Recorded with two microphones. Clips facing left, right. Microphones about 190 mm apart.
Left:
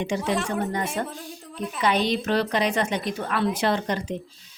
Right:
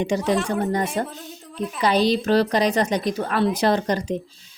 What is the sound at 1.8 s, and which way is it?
A woman's voice, 35° right (ahead or behind).